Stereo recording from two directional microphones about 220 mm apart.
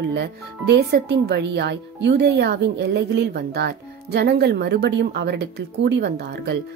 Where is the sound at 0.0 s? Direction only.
50° right (ahead or behind).